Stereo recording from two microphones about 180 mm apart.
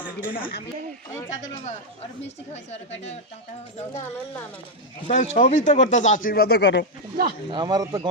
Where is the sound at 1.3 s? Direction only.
40° left (ahead or behind).